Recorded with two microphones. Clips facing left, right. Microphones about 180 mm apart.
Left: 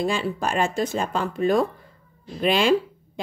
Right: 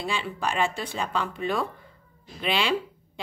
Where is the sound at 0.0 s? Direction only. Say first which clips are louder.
Left 5 dB; 45° left (ahead or behind).